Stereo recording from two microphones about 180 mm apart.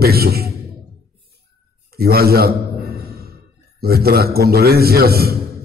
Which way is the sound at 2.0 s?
60° right (ahead or behind).